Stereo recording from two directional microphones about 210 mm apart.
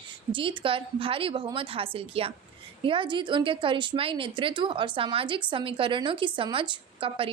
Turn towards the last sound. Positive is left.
turn(degrees=-25)  # may be behind; listen again after turning